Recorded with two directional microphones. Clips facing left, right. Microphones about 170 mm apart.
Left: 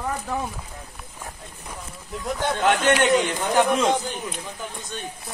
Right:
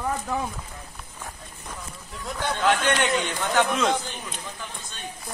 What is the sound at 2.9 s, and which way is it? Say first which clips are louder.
A man's voice: left 5 dB; 15° left (ahead or behind).